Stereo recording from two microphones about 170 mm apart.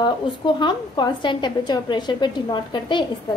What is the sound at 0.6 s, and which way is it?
A woman's voice, 25° left (ahead or behind).